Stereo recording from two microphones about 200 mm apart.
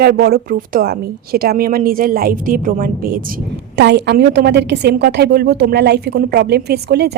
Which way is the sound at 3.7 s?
60° right (ahead or behind).